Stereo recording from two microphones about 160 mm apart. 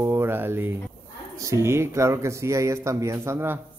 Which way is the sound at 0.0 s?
15° right (ahead or behind).